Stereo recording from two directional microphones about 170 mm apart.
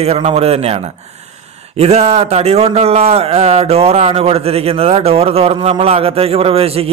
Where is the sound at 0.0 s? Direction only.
35° right (ahead or behind).